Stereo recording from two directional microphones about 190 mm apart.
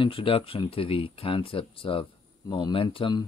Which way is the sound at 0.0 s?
30° left (ahead or behind).